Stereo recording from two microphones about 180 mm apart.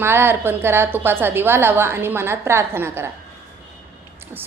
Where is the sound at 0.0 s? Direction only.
15° right (ahead or behind).